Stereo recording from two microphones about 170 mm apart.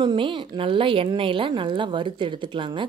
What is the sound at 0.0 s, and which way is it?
A woman's voice, 30° right (ahead or behind).